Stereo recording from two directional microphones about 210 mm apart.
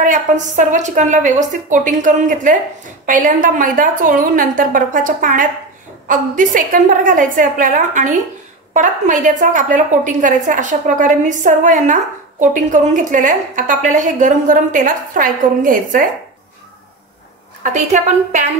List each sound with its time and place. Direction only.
0.0 s a woman's voice: 40° right (ahead or behind)
17.6 s a woman's voice: 35° right (ahead or behind)